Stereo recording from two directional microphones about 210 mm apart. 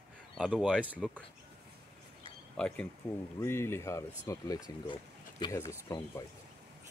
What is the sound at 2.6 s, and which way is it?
Speech, 5° left (ahead or behind).